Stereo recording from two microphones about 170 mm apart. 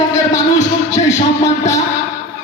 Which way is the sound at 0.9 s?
45° left (ahead or behind).